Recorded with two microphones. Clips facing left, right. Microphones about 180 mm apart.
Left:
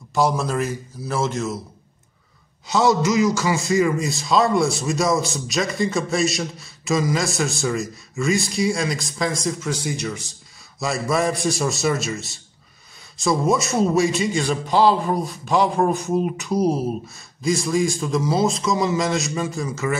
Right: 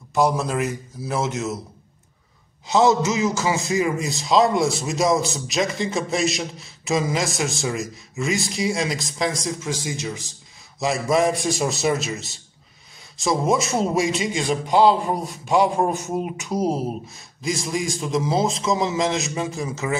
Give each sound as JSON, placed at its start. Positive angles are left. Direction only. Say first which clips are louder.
{"t": 0.1, "sound": "a man's voice", "louder": "even", "side_deg": -20}
{"t": 2.7, "sound": "a man's voice", "louder": "even", "side_deg": -20}
{"t": 13.2, "sound": "a man's voice", "louder": "left 1 dB", "side_deg": -15}